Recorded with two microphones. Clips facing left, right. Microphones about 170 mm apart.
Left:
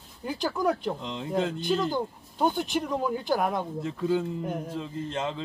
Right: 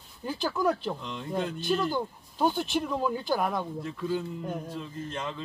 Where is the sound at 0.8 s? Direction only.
25° left (ahead or behind).